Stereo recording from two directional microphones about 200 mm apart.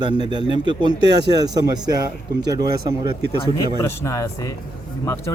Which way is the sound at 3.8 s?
15° left (ahead or behind).